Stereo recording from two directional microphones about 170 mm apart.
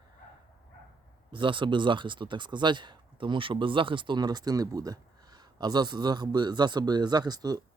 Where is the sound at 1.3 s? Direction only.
30° right (ahead or behind).